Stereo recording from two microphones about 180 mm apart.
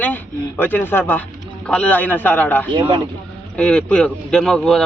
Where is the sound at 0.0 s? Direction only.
10° left (ahead or behind).